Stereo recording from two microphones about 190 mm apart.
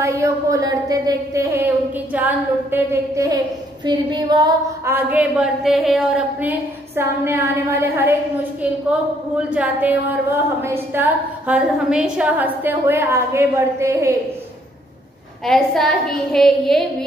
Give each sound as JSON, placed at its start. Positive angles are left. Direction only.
{"t": 0.0, "sound": "a woman's voice", "side_deg": -15}
{"t": 9.5, "sound": "a woman's voice", "side_deg": -5}
{"t": 15.4, "sound": "a woman's voice", "side_deg": 0}